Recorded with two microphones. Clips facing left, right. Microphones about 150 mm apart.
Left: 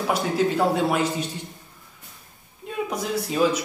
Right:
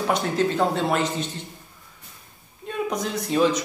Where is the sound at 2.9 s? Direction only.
5° left (ahead or behind).